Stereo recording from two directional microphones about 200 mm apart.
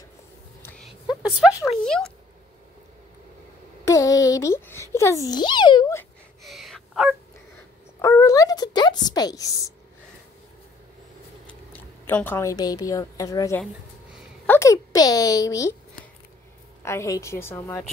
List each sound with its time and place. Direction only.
1.9 s speech: 5° left (ahead or behind)
3.8 s a child's voice: 15° left (ahead or behind)
6.4 s gasp: centre (ahead or behind)
8.0 s a sound: 15° left (ahead or behind)
11.4 s a woman's voice: 10° left (ahead or behind)
14.4 s a sound: 10° left (ahead or behind)
16.8 s a woman's voice: 15° left (ahead or behind)